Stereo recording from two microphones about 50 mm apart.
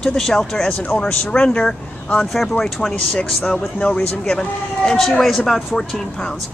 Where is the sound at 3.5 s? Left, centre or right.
Left.